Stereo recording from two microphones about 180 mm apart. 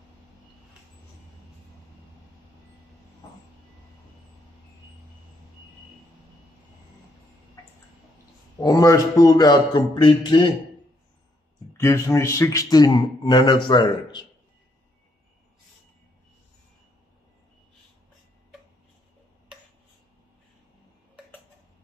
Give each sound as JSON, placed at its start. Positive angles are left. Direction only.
{"t": 8.5, "sound": "a man's voice", "side_deg": 20}
{"t": 11.7, "sound": "a man's voice", "side_deg": 15}